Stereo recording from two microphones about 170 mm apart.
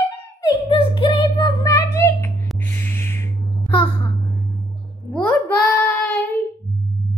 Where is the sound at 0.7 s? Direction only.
30° left (ahead or behind); by 2.3 s 15° left (ahead or behind).